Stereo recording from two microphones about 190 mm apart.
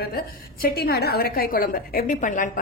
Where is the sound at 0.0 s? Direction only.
50° left (ahead or behind).